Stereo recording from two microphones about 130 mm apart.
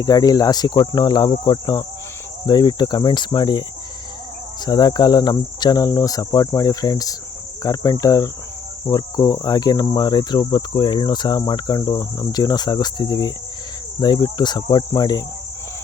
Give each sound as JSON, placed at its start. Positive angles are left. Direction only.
{"t": 0.0, "sound": "cricket", "side_deg": 30}
{"t": 4.6, "sound": "cricket", "side_deg": 30}